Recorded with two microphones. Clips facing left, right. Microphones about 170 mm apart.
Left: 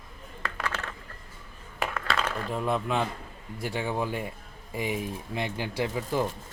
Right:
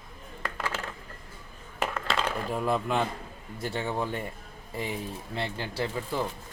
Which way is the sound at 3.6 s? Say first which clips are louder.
Left 1 dB; 10° left (ahead or behind).